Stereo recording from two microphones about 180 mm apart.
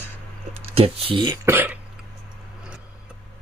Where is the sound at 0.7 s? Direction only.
30° right (ahead or behind).